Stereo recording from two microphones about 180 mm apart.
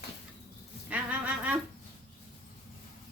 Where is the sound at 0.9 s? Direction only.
10° right (ahead or behind).